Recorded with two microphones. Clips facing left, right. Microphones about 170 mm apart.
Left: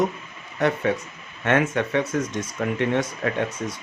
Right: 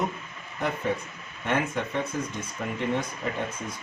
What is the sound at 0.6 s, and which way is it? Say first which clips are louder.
Speech: left 6 dB; 80° left.